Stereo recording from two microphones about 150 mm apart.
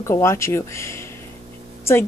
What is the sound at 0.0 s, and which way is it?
Speech, 20° left (ahead or behind).